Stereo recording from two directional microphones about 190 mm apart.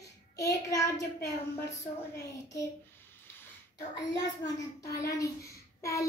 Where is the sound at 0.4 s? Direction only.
15° left (ahead or behind).